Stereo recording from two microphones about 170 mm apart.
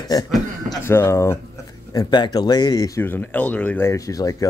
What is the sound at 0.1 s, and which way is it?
Speech, 20° left (ahead or behind).